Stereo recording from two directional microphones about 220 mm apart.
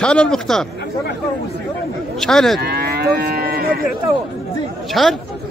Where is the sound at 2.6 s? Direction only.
45° right (ahead or behind).